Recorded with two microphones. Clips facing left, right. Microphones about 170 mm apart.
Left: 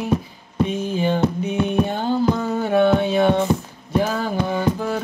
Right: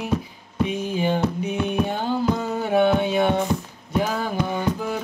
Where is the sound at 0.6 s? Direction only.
15° right (ahead or behind).